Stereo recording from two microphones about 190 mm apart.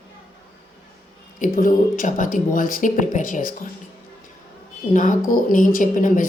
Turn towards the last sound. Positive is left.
turn(degrees=45)  # may be behind; listen again after turning